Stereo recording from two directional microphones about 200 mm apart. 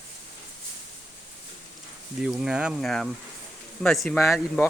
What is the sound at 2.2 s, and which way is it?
Speech, 5° right (ahead or behind).